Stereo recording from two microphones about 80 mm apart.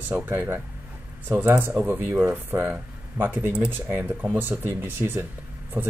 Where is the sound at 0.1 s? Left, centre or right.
Right.